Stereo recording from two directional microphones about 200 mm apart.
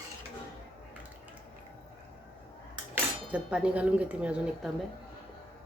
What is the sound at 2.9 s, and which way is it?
Speech, 5° right (ahead or behind).